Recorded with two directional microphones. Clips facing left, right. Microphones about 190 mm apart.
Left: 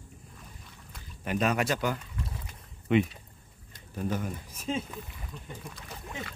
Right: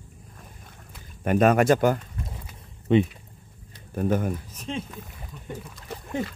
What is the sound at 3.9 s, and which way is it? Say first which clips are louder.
Speech: right 8 dB; 50° right (ahead or behind).